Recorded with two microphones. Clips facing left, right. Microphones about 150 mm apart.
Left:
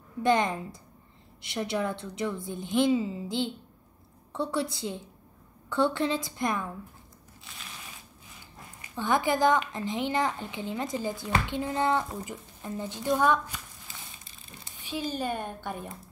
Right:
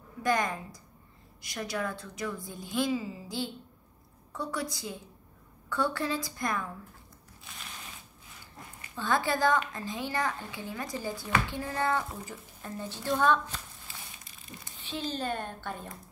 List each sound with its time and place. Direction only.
0.2 s a woman's voice: 25° left (ahead or behind)
8.9 s a woman's voice: 15° left (ahead or behind)
14.8 s a woman's voice: 10° left (ahead or behind)